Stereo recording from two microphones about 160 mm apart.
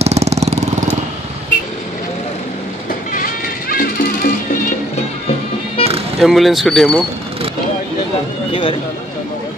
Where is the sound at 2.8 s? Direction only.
65° left (ahead or behind).